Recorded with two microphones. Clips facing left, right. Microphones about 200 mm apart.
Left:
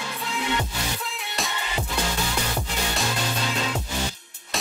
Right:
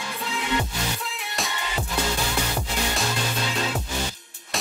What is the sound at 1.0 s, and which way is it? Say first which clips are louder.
Music: even; centre (ahead or behind).